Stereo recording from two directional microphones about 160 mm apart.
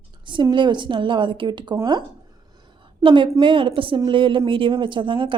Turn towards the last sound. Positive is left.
turn(degrees=-30)  # may be behind; listen again after turning